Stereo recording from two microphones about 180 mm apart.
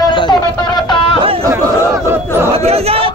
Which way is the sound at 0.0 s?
25° left (ahead or behind).